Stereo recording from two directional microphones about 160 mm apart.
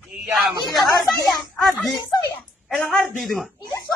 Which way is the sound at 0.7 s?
Centre (ahead or behind).